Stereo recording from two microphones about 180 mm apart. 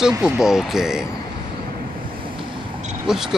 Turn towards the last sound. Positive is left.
turn(degrees=-5)  # may be behind; listen again after turning